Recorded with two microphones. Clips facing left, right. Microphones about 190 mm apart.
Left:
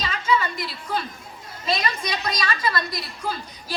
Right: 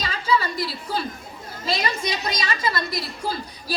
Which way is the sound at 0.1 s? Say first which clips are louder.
Right 1 dB; 35° right (ahead or behind).